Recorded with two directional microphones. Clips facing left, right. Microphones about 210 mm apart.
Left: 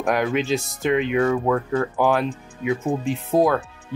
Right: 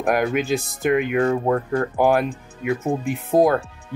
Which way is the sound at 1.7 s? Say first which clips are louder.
Right 2 dB; 10° right (ahead or behind).